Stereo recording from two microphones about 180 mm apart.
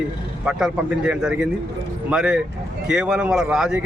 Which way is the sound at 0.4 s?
5° right (ahead or behind).